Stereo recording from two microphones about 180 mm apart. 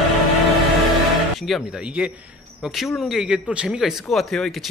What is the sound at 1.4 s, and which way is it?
A man's voice, centre (ahead or behind).